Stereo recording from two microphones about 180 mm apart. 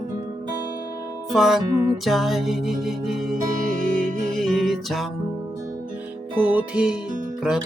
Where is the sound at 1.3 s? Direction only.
Centre (ahead or behind).